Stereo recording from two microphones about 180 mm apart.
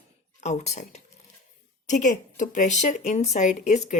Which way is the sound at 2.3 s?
45° left (ahead or behind).